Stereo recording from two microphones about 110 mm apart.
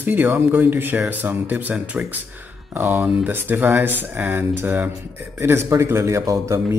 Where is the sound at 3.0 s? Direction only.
5° right (ahead or behind).